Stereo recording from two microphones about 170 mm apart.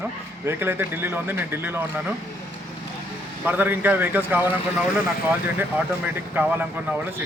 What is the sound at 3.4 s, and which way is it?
Speech, 10° right (ahead or behind).